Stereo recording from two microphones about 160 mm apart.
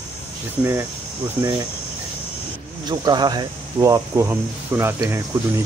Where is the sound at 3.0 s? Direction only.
25° right (ahead or behind).